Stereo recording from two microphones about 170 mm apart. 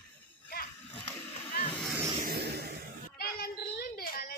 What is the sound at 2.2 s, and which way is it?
Vehicle, 65° right (ahead or behind).